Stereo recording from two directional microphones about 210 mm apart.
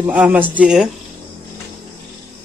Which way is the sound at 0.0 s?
5° right (ahead or behind).